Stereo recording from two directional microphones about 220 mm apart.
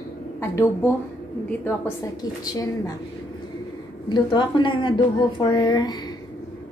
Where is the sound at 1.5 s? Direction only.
10° left (ahead or behind).